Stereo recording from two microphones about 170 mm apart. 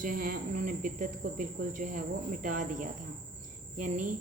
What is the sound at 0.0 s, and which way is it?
Speech, 55° right (ahead or behind).